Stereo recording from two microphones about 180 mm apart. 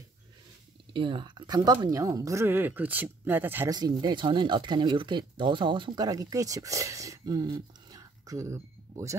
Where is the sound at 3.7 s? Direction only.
25° right (ahead or behind).